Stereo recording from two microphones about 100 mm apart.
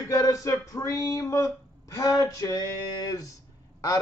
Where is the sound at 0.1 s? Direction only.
35° left (ahead or behind).